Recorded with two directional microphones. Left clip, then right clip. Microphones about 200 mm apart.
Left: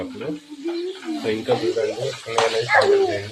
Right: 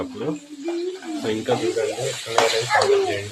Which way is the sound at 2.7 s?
Centre (ahead or behind).